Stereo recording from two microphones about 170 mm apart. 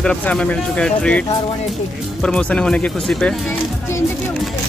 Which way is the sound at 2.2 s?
5° left (ahead or behind).